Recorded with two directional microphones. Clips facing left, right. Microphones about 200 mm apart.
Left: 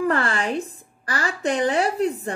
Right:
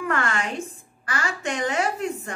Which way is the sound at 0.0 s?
35° left (ahead or behind).